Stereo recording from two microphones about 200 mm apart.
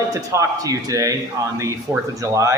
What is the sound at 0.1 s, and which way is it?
A man's voice, 15° right (ahead or behind).